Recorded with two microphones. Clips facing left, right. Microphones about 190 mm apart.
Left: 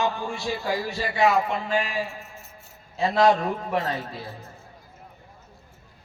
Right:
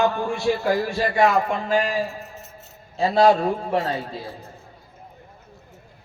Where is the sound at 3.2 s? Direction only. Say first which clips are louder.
Right 3 dB; 30° right (ahead or behind).